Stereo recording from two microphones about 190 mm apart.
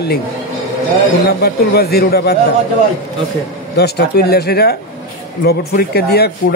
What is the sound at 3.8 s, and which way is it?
A man's voice, 60° left (ahead or behind).